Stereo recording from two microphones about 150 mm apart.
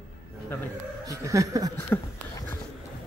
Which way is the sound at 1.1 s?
20° right (ahead or behind).